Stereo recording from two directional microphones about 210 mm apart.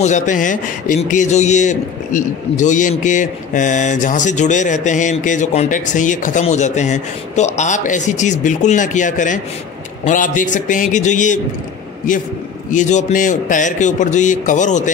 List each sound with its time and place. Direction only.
0.0 s speech: 35° left (ahead or behind)
12.7 s speech: 35° left (ahead or behind)